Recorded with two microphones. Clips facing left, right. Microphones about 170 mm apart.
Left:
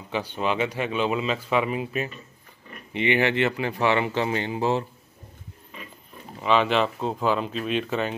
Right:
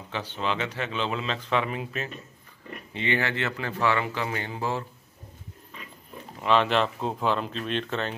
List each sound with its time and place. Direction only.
0.1 s speech: 15° left (ahead or behind)
6.4 s speech: centre (ahead or behind)